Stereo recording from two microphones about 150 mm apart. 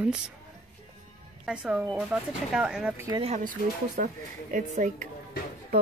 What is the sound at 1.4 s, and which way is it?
Speech, 5° right (ahead or behind).